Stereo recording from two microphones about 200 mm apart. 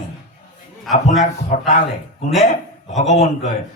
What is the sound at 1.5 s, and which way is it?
Speech, 40° left (ahead or behind).